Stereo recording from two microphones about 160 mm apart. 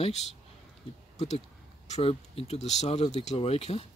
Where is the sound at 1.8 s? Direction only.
40° left (ahead or behind).